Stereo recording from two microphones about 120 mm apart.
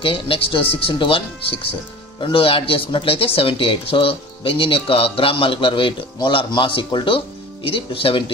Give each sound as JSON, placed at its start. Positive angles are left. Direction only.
{"t": 0.0, "sound": "speech", "side_deg": 50}